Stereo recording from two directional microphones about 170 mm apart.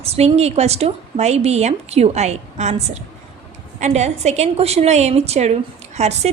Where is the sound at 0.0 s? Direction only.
35° right (ahead or behind).